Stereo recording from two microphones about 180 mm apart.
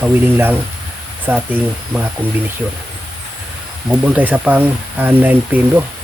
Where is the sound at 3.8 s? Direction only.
5° right (ahead or behind).